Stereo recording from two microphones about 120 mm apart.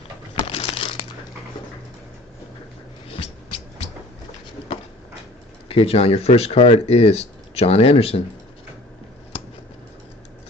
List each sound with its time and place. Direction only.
0.5 s crumpling: 55° left (ahead or behind)
5.7 s speech: 55° left (ahead or behind)